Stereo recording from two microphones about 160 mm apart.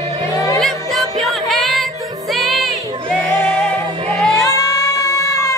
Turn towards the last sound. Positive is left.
turn(degrees=20)  # may be behind; listen again after turning